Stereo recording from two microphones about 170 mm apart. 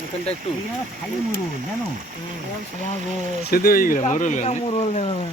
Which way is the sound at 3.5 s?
60° left (ahead or behind).